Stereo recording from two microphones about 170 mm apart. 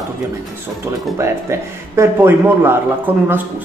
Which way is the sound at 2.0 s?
15° right (ahead or behind).